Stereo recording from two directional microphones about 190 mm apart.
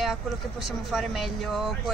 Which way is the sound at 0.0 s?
Centre (ahead or behind).